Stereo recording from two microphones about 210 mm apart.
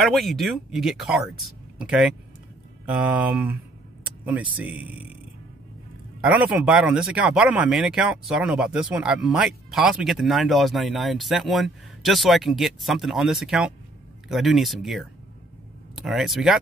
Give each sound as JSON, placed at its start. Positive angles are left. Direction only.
{"t": 0.0, "sound": "speech", "side_deg": 0}
{"t": 6.2, "sound": "speech", "side_deg": -5}